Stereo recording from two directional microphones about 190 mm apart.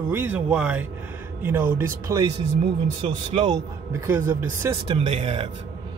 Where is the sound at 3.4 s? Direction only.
15° right (ahead or behind).